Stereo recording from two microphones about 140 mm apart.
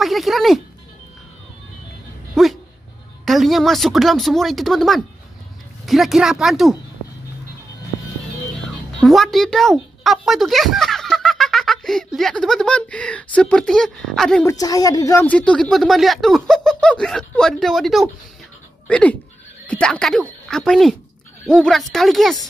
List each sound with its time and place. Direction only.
0.0 s speech: centre (ahead or behind)
2.4 s dog: centre (ahead or behind)
3.3 s speech: centre (ahead or behind)
9.0 s speech: centre (ahead or behind)
14.4 s a woman's voice: 25° left (ahead or behind)
15.2 s speech: 10° left (ahead or behind)